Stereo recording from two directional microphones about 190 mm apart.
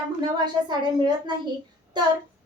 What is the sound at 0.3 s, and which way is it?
Speech, 20° right (ahead or behind).